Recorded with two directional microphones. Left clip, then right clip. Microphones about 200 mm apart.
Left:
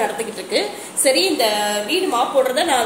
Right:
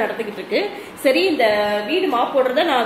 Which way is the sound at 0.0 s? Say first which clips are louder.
Left 1 dB; 25° right (ahead or behind).